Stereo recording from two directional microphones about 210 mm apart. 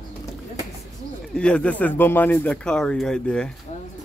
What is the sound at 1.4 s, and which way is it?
Speech, 5° left (ahead or behind).